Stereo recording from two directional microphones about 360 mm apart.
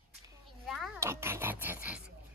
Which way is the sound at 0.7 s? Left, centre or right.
Centre.